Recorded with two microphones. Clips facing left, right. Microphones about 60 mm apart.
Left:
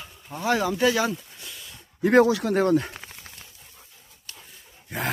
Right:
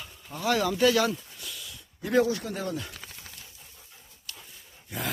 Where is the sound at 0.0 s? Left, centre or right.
Centre.